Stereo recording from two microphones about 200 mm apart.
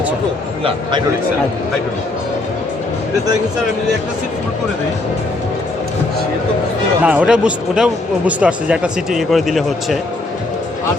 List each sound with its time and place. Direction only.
0.6 s a man's voice: 25° right (ahead or behind)
7.0 s speech: 5° right (ahead or behind)